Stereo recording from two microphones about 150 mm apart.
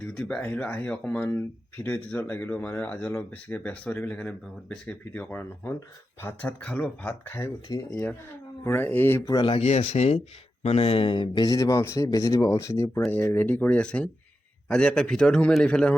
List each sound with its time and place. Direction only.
0.0 s speech: 5° left (ahead or behind)
9.3 s a man's voice: 35° left (ahead or behind); by 16.0 s 5° left (ahead or behind)